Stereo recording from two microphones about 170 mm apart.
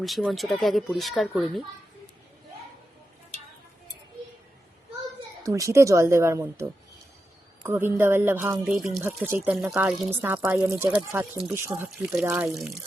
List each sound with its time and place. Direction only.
0.0 s speech: centre (ahead or behind)
5.4 s speech: 20° right (ahead or behind)
8.6 s speech: centre (ahead or behind)